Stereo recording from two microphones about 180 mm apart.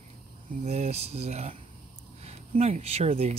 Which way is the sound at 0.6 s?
40° right (ahead or behind).